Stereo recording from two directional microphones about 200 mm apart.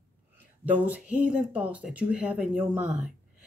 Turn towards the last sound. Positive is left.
turn(degrees=-5)  # may be behind; listen again after turning